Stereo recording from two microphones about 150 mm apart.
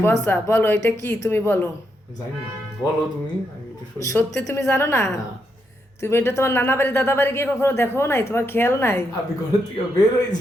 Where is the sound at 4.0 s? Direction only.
20° left (ahead or behind).